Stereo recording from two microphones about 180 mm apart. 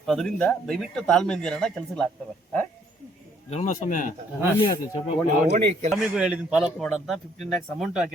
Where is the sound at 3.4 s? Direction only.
40° left (ahead or behind).